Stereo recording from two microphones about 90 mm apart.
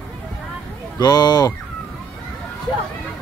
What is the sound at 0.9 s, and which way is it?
Speech, 50° left (ahead or behind).